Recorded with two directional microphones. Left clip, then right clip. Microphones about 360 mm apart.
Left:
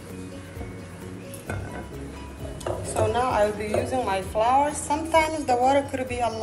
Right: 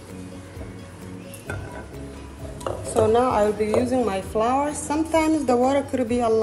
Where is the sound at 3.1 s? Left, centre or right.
Right.